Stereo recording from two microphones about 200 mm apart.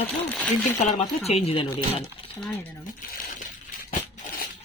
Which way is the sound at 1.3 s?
30° left (ahead or behind).